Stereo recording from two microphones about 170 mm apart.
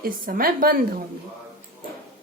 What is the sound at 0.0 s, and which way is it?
A woman's voice, 60° right (ahead or behind).